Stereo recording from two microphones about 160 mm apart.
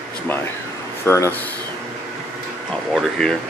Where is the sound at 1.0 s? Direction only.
15° left (ahead or behind).